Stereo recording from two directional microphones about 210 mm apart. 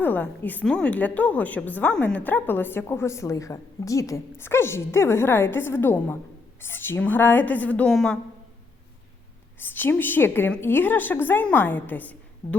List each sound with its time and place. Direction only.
0.0 s a woman's voice: 10° left (ahead or behind)
9.6 s a woman's voice: 10° left (ahead or behind)